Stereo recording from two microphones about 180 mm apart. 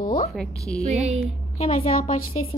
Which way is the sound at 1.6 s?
30° left (ahead or behind).